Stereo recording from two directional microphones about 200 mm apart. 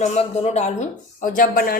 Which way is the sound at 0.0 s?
35° left (ahead or behind).